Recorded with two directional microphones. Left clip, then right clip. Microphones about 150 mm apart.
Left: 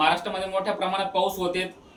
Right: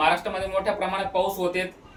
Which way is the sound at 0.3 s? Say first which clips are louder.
Right 1 dB; 25° right (ahead or behind).